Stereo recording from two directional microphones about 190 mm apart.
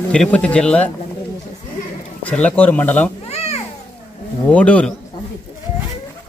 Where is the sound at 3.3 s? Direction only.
35° left (ahead or behind).